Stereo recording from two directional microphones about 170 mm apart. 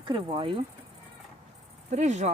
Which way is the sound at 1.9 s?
45° right (ahead or behind).